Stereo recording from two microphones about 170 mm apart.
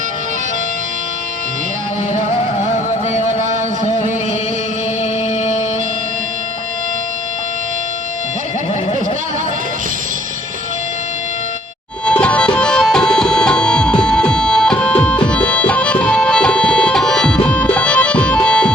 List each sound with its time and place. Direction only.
2.1 s music: 45° left (ahead or behind)
12.0 s tabla: 5° left (ahead or behind)